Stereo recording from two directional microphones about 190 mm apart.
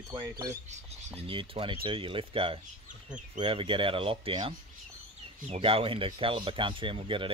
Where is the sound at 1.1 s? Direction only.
30° right (ahead or behind).